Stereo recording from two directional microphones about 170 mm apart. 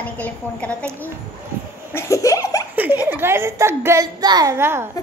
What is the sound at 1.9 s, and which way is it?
Laughter, 15° left (ahead or behind).